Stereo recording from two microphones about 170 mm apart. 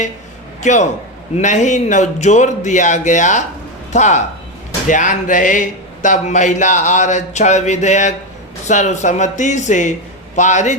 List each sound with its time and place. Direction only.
0.6 s a man's voice: 45° left (ahead or behind)